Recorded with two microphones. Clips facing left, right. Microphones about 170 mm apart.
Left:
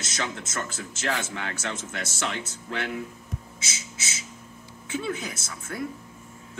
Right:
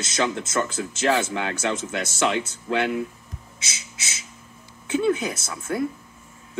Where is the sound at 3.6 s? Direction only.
45° left (ahead or behind).